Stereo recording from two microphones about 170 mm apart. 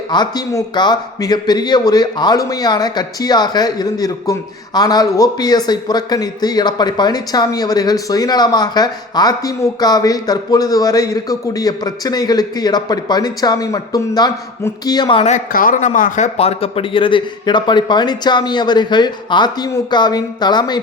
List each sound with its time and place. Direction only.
0.1 s a man's voice: 25° left (ahead or behind)
15.3 s a man's voice: 50° left (ahead or behind); by 20.8 s 25° left (ahead or behind)